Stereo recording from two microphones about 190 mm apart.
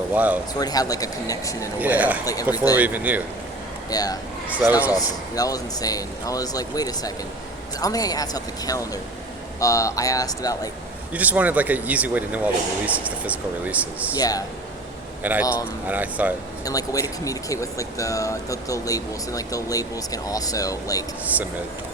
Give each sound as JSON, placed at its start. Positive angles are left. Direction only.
{"t": 0.1, "sound": "speech", "side_deg": -10}
{"t": 0.6, "sound": "speech", "side_deg": 20}
{"t": 1.8, "sound": "speech", "side_deg": -10}
{"t": 2.2, "sound": "speech", "side_deg": 20}
{"t": 2.7, "sound": "speech", "side_deg": -10}
{"t": 3.8, "sound": "speech", "side_deg": 20}
{"t": 4.4, "sound": "speech", "side_deg": -10}
{"t": 4.9, "sound": "speech", "side_deg": 20}
{"t": 11.1, "sound": "speech", "side_deg": -10}
{"t": 14.2, "sound": "speech", "side_deg": 20}
{"t": 15.2, "sound": "speech", "side_deg": -10}
{"t": 16.6, "sound": "speech", "side_deg": 20}